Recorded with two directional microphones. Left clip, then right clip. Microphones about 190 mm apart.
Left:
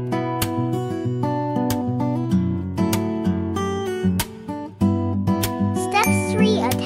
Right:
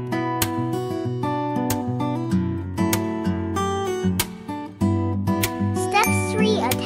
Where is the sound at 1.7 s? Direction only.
25° left (ahead or behind).